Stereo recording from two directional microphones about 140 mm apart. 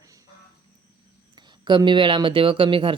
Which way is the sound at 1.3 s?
30° right (ahead or behind).